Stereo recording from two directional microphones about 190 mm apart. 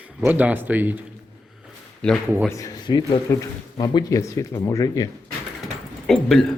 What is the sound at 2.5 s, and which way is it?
Speech, 20° left (ahead or behind).